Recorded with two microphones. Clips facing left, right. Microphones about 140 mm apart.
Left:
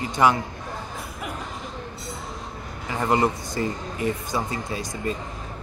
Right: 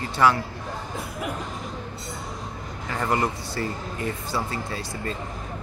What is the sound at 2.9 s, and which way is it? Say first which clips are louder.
Speech: left 3 dB; 20° left (ahead or behind).